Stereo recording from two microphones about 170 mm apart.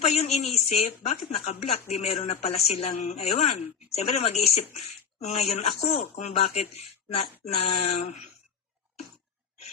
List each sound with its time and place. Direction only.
0.0 s speech: 40° left (ahead or behind)